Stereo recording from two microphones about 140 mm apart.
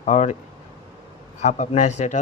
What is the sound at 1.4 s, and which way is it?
Speech, 60° left (ahead or behind).